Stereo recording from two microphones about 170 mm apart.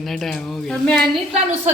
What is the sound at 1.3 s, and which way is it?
Speech, 40° right (ahead or behind).